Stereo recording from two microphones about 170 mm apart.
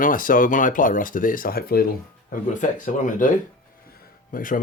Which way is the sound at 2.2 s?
50° left (ahead or behind).